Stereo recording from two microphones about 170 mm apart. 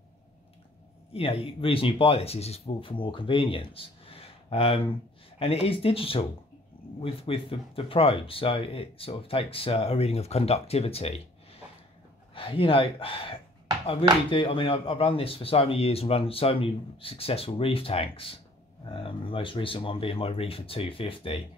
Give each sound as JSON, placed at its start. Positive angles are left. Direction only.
{"t": 1.1, "sound": "speech", "side_deg": 30}
{"t": 14.3, "sound": "speech", "side_deg": 30}